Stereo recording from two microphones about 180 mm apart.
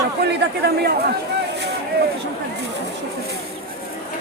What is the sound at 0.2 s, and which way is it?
Speech, 65° right (ahead or behind).